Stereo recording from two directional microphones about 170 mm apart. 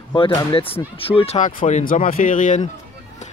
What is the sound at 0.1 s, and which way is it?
Speech, 25° left (ahead or behind).